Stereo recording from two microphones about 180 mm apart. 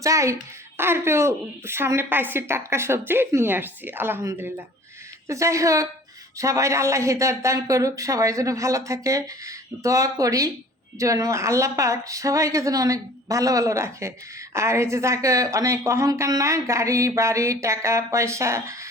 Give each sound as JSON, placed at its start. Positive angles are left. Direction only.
{"t": 0.0, "sound": "a woman's voice", "side_deg": -15}